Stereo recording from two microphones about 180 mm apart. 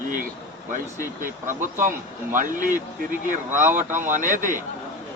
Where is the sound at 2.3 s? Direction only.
45° right (ahead or behind).